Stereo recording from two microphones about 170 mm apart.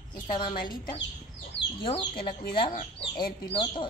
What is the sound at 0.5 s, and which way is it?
Speech, 55° left (ahead or behind).